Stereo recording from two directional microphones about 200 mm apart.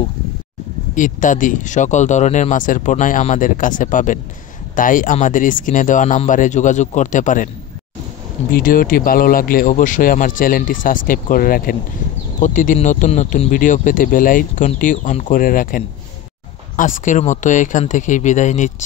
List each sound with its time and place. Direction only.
0.9 s speech: 40° left (ahead or behind)
8.5 s speech: 45° left (ahead or behind)